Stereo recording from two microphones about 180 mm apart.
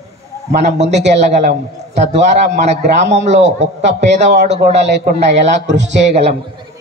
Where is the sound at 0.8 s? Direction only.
40° right (ahead or behind).